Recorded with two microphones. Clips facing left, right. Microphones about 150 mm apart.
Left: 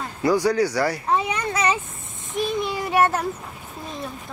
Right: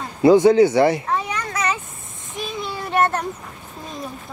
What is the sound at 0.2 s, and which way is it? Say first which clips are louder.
Speech: right 8 dB; 25° right (ahead or behind).